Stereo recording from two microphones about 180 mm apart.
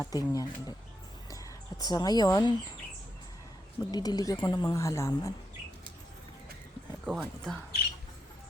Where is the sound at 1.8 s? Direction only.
25° left (ahead or behind).